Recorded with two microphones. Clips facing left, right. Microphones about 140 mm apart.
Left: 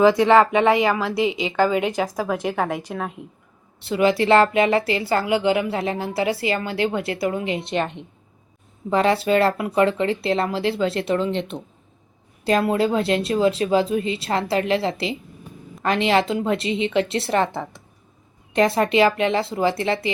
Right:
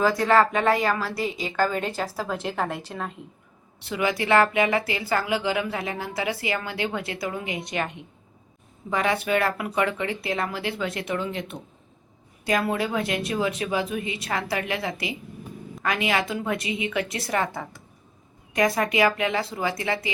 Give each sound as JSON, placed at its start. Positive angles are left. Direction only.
{"t": 0.0, "sound": "a woman's voice", "side_deg": 20}
{"t": 3.8, "sound": "speech", "side_deg": 25}
{"t": 8.9, "sound": "speech", "side_deg": 30}